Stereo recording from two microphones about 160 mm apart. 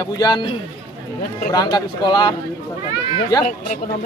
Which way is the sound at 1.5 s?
25° left (ahead or behind).